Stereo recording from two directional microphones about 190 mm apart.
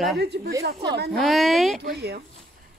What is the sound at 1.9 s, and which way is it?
Speech, 55° right (ahead or behind).